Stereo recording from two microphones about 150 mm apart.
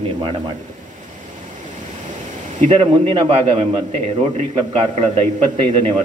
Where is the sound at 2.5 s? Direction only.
35° right (ahead or behind).